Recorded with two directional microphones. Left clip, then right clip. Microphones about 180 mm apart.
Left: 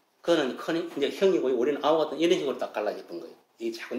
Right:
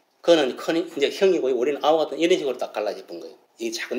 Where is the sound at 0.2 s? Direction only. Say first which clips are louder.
Right 7 dB; 20° right (ahead or behind).